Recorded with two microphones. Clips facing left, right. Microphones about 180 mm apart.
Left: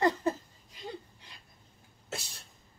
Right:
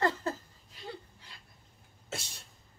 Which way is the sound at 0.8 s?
20° left (ahead or behind).